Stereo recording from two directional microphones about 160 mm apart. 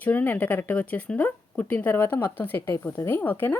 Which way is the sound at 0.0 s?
10° left (ahead or behind).